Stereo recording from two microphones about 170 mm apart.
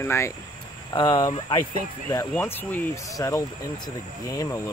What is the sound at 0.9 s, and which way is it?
Speech, 30° left (ahead or behind).